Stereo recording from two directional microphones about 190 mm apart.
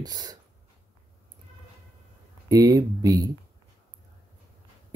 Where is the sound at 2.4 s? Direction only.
20° right (ahead or behind).